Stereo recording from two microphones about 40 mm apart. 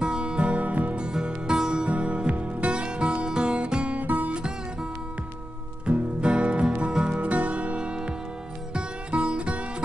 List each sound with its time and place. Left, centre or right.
0.0 s music: right
1.2 s music: right
4.3 s music: right
5.9 s music: right
7.2 s music: right